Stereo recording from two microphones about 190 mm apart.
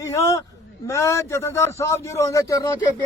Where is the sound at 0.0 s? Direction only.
15° left (ahead or behind).